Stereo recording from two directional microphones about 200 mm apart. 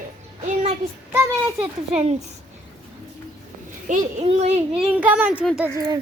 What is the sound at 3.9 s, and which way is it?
Speech, 40° right (ahead or behind).